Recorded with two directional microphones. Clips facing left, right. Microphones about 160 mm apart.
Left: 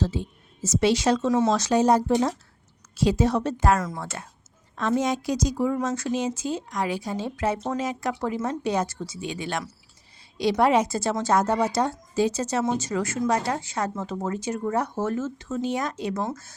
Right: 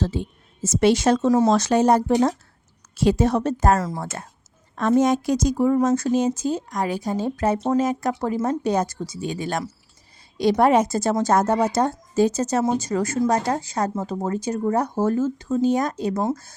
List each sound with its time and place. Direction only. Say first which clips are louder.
0.0 s speech: right 2 dB; 55° right (ahead or behind)
1.5 s speech: right 3 dB; 55° right (ahead or behind)
3.8 s a woman's voice: right 3 dB; 30° right (ahead or behind)
4.0 s a woman's voice: right 3 dB; 45° right (ahead or behind)